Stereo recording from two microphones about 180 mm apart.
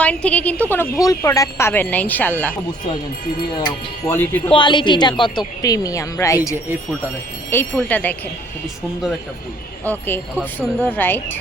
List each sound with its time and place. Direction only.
0.0 s a woman's voice: 5° left (ahead or behind)
4.0 s a woman's voice: 10° left (ahead or behind)
4.5 s a woman's voice: 25° left (ahead or behind); by 8.1 s 10° left (ahead or behind)
9.8 s a woman's voice: 10° left (ahead or behind)